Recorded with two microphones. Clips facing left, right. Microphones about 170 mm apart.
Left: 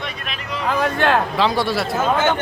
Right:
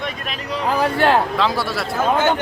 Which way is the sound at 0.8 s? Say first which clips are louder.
Right 2 dB; 30° right (ahead or behind).